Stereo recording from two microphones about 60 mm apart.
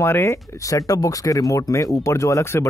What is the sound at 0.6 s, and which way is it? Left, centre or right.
Speech, left.